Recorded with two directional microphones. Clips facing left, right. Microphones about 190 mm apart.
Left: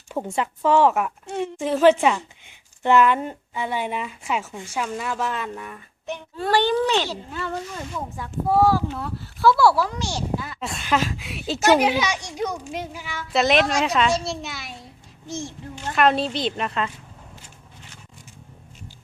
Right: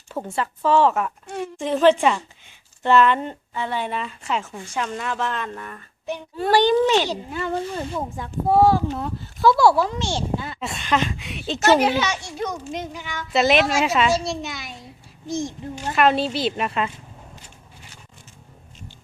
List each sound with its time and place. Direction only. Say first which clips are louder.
0.3 s a woman's voice: even; 15° left (ahead or behind)
6.1 s a child's voice: right 3 dB; 10° right (ahead or behind)
7.5 s speech: right 5 dB; 30° right (ahead or behind)
10.6 s a woman's voice: even; centre (ahead or behind)
15.3 s a child's voice: right 5 dB; 15° right (ahead or behind)
16.0 s a woman's voice: right 1 dB; centre (ahead or behind)